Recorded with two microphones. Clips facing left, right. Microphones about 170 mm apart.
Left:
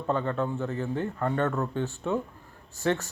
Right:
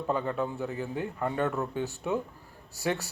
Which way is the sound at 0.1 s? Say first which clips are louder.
Left 3 dB; 10° right (ahead or behind).